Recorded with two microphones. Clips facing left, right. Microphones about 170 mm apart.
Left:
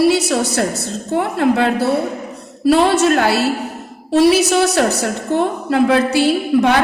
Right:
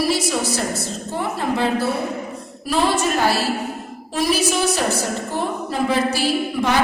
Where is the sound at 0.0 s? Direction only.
65° left (ahead or behind).